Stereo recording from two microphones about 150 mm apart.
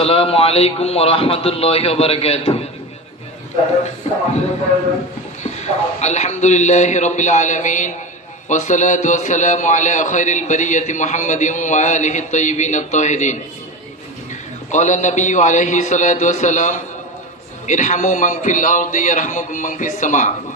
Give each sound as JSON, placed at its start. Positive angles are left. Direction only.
{"t": 0.0, "sound": "a man's voice", "side_deg": 40}
{"t": 5.4, "sound": "a man's voice", "side_deg": 50}
{"t": 14.7, "sound": "a man's voice", "side_deg": 55}